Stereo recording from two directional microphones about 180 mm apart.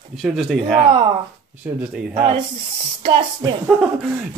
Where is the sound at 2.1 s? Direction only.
25° right (ahead or behind).